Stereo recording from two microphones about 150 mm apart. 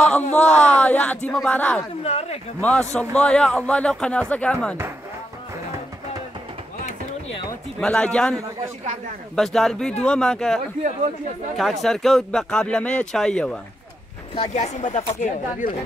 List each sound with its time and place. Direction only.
0.0 s speech: 10° left (ahead or behind)
2.0 s speech: 45° left (ahead or behind)
2.6 s speech: 10° left (ahead or behind)
7.8 s speech: 5° left (ahead or behind)
14.3 s speech: 45° left (ahead or behind)